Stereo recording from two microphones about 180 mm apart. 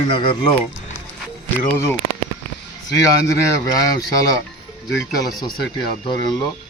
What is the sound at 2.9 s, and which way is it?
Speech, 20° left (ahead or behind).